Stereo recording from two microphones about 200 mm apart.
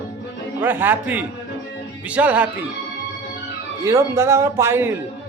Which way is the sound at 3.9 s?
15° right (ahead or behind).